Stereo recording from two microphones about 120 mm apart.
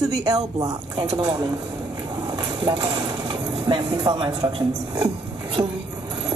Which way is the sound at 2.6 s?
35° right (ahead or behind).